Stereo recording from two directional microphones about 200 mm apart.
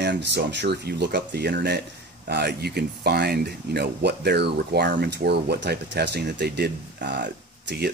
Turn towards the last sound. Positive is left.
turn(degrees=-55)  # may be behind; listen again after turning